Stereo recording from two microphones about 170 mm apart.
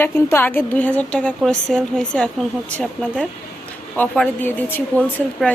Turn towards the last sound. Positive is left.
turn(degrees=10)  # may be behind; listen again after turning